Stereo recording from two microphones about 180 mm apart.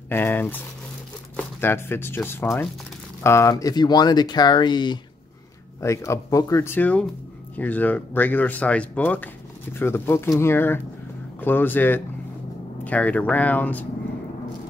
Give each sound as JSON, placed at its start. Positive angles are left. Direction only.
{"t": 0.1, "sound": "speech", "side_deg": 10}